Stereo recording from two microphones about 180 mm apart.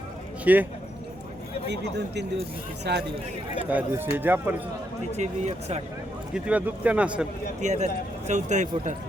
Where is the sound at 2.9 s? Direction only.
70° right (ahead or behind).